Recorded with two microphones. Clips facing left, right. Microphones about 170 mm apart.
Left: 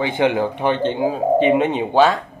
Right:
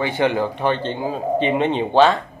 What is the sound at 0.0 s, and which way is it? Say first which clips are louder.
Speech: left 1 dB; 15° left (ahead or behind).